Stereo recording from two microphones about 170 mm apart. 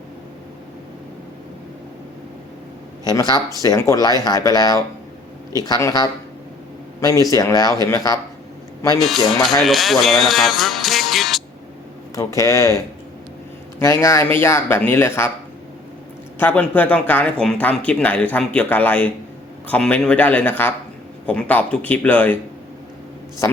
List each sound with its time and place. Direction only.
3.0 s speech: 25° left (ahead or behind)
9.0 s speech: centre (ahead or behind)
12.1 s speech: 20° left (ahead or behind)
16.4 s speech: 10° left (ahead or behind)